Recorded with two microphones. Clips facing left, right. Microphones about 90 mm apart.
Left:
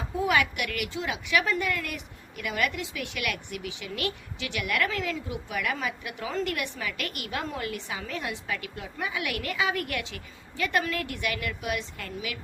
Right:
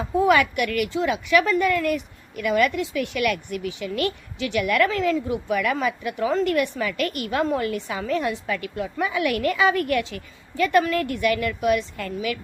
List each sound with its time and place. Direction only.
0.3 s a woman's voice: 45° right (ahead or behind)